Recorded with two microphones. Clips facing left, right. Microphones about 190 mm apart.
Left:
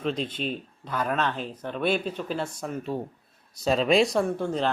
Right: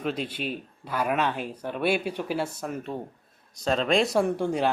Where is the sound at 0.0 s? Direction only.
5° right (ahead or behind).